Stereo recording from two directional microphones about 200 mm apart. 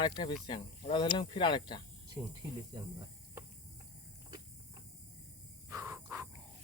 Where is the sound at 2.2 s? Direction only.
25° right (ahead or behind).